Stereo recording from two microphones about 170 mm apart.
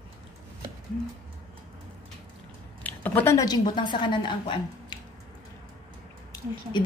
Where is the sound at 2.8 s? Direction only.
10° left (ahead or behind); by 4.9 s 25° left (ahead or behind).